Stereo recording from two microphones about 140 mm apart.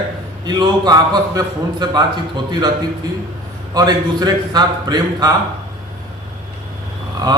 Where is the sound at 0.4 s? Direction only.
30° right (ahead or behind).